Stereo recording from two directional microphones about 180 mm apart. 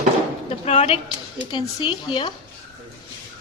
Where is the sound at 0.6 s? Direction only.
35° left (ahead or behind).